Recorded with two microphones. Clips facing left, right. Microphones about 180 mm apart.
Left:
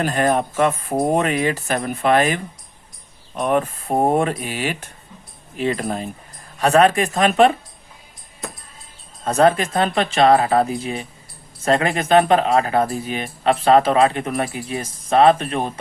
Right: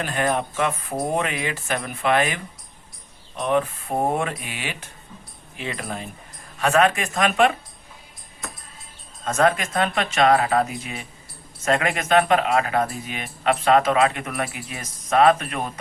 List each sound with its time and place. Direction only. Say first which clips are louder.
0.0 s speech: left 5 dB; 40° left (ahead or behind)
3.4 s speech: left 2 dB; 45° left (ahead or behind)
9.2 s speech: left 5 dB; 35° left (ahead or behind)